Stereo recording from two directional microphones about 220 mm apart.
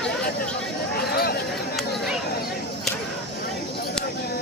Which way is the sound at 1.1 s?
45° left (ahead or behind).